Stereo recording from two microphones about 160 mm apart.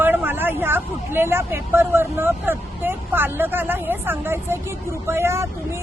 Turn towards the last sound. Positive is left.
turn(degrees=-15)  # may be behind; listen again after turning